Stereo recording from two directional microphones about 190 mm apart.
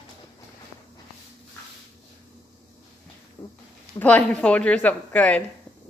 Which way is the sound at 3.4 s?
25° left (ahead or behind).